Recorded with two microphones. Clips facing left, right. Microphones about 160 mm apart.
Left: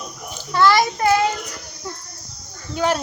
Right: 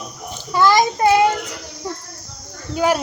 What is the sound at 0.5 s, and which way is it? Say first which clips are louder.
Speech: right 1 dB; 15° right (ahead or behind).